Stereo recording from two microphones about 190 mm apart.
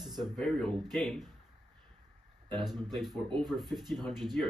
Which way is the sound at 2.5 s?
Centre (ahead or behind).